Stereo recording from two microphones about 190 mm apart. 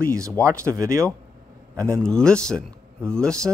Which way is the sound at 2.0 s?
5° left (ahead or behind).